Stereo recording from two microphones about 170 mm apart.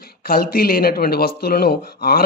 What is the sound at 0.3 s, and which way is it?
Speech, 60° left (ahead or behind).